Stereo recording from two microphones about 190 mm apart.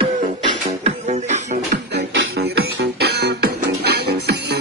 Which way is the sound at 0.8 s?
35° right (ahead or behind).